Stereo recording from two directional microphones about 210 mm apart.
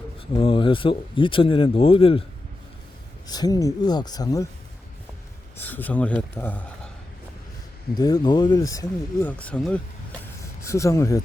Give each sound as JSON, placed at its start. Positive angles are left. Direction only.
{"t": 0.3, "sound": "speech", "side_deg": 25}
{"t": 3.2, "sound": "speech", "side_deg": 20}
{"t": 5.5, "sound": "speech", "side_deg": 10}
{"t": 7.9, "sound": "speech", "side_deg": 20}